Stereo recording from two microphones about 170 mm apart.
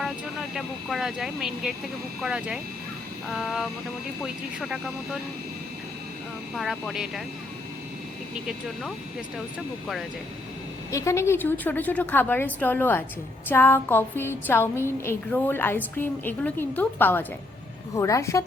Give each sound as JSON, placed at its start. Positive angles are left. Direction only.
{"t": 0.5, "sound": "speech", "side_deg": 0}
{"t": 6.5, "sound": "speech", "side_deg": 0}
{"t": 10.9, "sound": "a woman's voice", "side_deg": 15}